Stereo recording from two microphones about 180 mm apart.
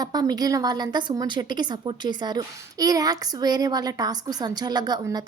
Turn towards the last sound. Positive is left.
turn(degrees=-20)  # may be behind; listen again after turning